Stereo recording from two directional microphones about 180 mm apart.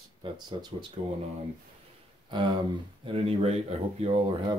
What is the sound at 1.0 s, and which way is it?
Speech, 35° right (ahead or behind).